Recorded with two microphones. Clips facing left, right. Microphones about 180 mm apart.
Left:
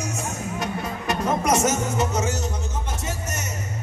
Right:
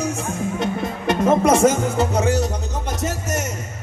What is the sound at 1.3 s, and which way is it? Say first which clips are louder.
Music: right 7 dB; 30° right (ahead or behind).